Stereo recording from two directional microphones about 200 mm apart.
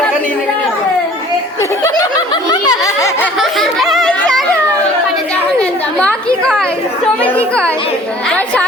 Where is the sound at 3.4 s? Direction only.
Centre (ahead or behind).